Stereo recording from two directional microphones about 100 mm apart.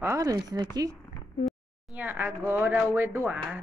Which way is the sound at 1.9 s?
20° right (ahead or behind).